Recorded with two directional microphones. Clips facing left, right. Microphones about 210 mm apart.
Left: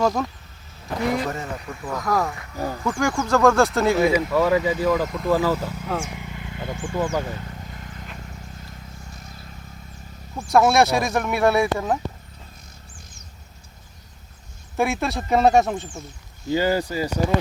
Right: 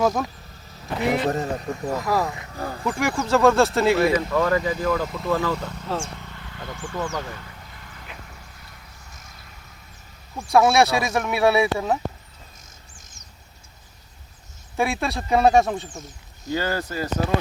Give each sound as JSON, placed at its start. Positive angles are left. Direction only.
{"t": 0.0, "sound": "speech", "side_deg": 0}
{"t": 1.2, "sound": "speech", "side_deg": -35}
{"t": 1.9, "sound": "speech", "side_deg": -5}
{"t": 2.2, "sound": "speech", "side_deg": -20}
{"t": 2.9, "sound": "speech", "side_deg": 0}
{"t": 4.1, "sound": "speech", "side_deg": 10}
{"t": 10.3, "sound": "speech", "side_deg": 0}
{"t": 14.8, "sound": "speech", "side_deg": 0}
{"t": 16.5, "sound": "speech", "side_deg": 15}